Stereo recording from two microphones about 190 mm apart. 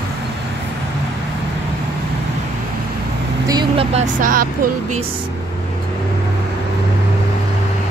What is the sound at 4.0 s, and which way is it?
Speech, 45° right (ahead or behind).